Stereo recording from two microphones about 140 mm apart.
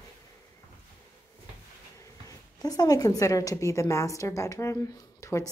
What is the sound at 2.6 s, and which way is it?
A woman's voice, 25° left (ahead or behind).